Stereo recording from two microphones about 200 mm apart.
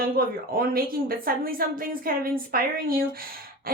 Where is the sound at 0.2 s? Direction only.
45° right (ahead or behind).